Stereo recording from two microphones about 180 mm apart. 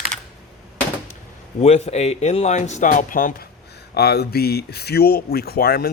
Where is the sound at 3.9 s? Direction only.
65° left (ahead or behind).